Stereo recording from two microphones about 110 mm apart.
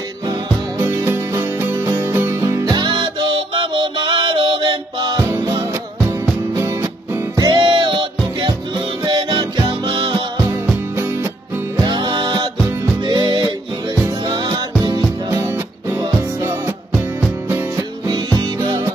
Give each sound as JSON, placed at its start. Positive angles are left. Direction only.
{"t": 1.0, "sound": "music", "side_deg": -20}
{"t": 2.8, "sound": "music", "side_deg": -45}
{"t": 6.5, "sound": "music", "side_deg": -25}
{"t": 7.5, "sound": "music", "side_deg": -50}
{"t": 9.1, "sound": "music", "side_deg": -50}
{"t": 11.8, "sound": "music", "side_deg": -45}
{"t": 15.3, "sound": "music", "side_deg": -20}
{"t": 16.9, "sound": "music", "side_deg": -10}
{"t": 17.7, "sound": "music", "side_deg": -35}